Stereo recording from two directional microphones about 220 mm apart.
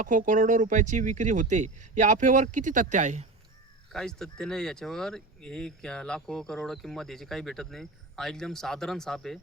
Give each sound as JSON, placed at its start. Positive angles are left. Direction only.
{"t": 0.0, "sound": "speech", "side_deg": -35}
{"t": 3.9, "sound": "speech", "side_deg": 0}